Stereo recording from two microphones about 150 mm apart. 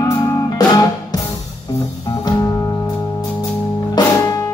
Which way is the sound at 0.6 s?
25° left (ahead or behind).